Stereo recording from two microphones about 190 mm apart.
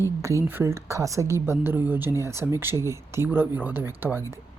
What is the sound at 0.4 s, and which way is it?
Speech, 10° right (ahead or behind).